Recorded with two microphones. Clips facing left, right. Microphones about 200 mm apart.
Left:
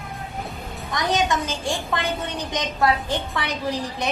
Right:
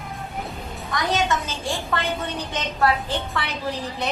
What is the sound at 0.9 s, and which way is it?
A woman's voice, 15° left (ahead or behind).